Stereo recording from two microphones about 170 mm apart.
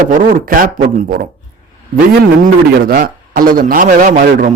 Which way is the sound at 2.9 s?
55° right (ahead or behind).